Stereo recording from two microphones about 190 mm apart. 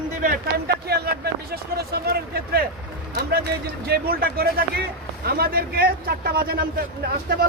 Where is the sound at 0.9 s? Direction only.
55° right (ahead or behind).